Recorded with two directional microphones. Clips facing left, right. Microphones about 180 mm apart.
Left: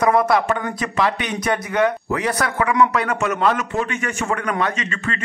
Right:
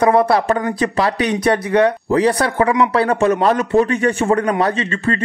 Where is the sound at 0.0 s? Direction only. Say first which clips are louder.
Right 3 dB; 30° right (ahead or behind).